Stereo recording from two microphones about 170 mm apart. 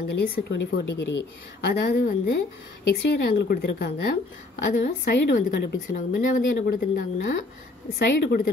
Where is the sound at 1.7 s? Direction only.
65° left (ahead or behind).